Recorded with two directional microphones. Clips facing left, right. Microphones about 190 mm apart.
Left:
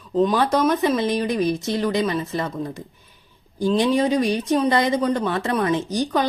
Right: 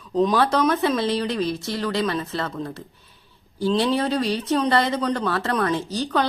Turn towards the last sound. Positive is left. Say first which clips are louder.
# left 2 dB
turn(degrees=15)  # may be behind; listen again after turning